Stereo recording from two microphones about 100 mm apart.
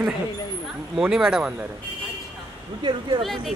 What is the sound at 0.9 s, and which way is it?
Speech, 5° right (ahead or behind).